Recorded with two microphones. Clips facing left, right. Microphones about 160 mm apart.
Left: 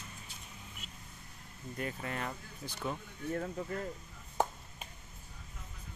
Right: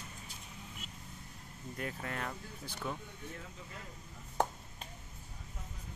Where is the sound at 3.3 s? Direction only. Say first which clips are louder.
Left 12 dB; 55° left (ahead or behind).